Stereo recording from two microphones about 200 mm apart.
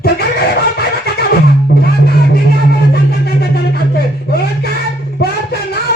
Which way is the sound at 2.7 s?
55° left (ahead or behind).